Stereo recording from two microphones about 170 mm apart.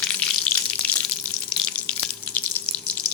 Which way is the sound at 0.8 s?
10° left (ahead or behind).